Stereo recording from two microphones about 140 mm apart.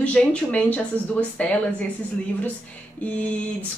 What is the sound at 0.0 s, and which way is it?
A woman's voice, 10° left (ahead or behind).